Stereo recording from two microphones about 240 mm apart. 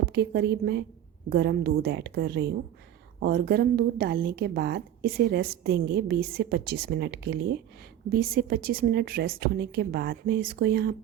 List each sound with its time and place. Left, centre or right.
0.0 s a woman's voice: right